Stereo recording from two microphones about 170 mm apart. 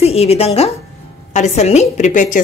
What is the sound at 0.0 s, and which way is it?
A woman's voice, 35° left (ahead or behind).